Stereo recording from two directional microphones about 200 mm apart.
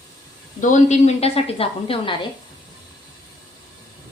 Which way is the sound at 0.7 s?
35° left (ahead or behind).